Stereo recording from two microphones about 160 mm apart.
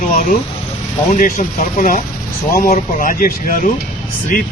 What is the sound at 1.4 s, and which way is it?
Speech, 60° left (ahead or behind).